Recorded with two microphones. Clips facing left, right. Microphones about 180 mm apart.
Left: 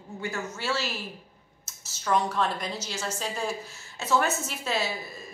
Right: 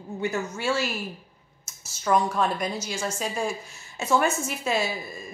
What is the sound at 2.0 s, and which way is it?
A woman's voice, 10° right (ahead or behind).